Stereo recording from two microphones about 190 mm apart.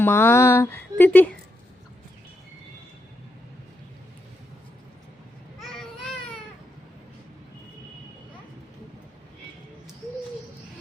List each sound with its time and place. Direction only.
0.0 s speech: 10° left (ahead or behind)